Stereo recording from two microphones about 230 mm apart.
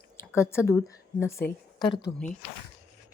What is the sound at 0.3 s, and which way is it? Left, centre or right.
A woman's voice, centre.